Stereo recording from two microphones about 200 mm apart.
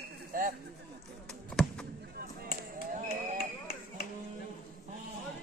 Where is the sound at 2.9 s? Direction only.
35° right (ahead or behind).